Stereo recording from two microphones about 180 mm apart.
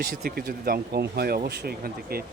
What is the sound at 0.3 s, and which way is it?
Speech, 55° right (ahead or behind).